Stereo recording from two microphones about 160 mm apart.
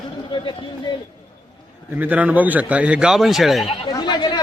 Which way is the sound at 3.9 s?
25° left (ahead or behind).